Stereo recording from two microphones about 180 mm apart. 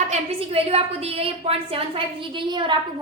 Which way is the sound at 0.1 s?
30° right (ahead or behind).